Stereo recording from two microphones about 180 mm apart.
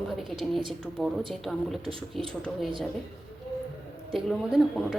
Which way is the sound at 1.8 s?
30° right (ahead or behind).